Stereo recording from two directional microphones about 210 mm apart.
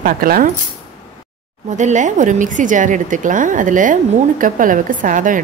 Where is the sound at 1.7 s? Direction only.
35° right (ahead or behind).